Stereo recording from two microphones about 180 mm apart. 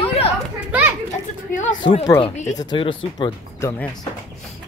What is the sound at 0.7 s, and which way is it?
Children playing, 10° right (ahead or behind).